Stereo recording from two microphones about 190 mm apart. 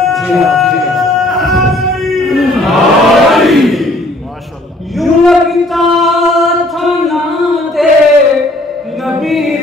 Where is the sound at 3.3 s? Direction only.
Centre (ahead or behind).